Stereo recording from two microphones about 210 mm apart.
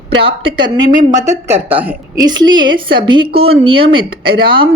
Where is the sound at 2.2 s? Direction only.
20° right (ahead or behind).